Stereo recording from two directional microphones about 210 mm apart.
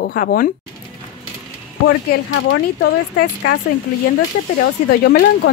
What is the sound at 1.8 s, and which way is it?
Speech, 65° left (ahead or behind).